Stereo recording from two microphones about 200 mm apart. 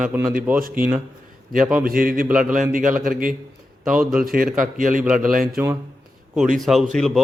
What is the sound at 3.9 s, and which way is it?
Speech, 5° right (ahead or behind).